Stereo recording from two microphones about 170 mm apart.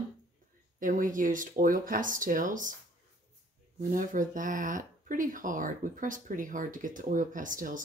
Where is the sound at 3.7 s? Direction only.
50° right (ahead or behind).